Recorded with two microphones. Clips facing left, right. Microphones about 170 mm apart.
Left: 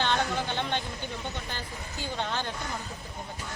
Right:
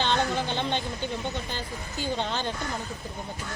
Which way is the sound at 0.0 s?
25° right (ahead or behind).